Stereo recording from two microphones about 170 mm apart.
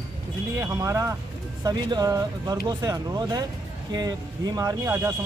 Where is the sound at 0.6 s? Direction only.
20° right (ahead or behind).